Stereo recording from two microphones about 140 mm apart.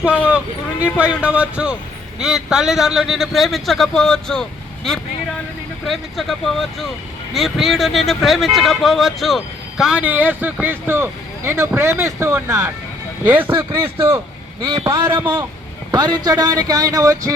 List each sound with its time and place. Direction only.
0.1 s speech: 10° right (ahead or behind)
14.6 s a man's voice: 35° right (ahead or behind)